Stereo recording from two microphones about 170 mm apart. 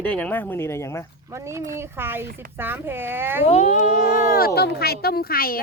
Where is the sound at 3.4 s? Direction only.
40° left (ahead or behind).